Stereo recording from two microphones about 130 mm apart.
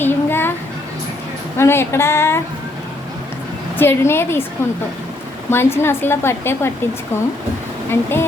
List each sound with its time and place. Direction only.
0.0 s a sound: 15° left (ahead or behind)
1.5 s a woman's voice: 20° left (ahead or behind)
3.8 s a woman's voice: 20° left (ahead or behind)
5.5 s a woman's voice: 20° left (ahead or behind)
7.9 s speech: 20° left (ahead or behind)